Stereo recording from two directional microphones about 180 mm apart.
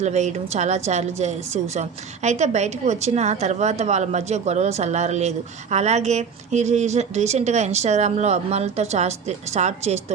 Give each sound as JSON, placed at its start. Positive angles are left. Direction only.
{"t": 0.0, "sound": "a woman's voice", "side_deg": -40}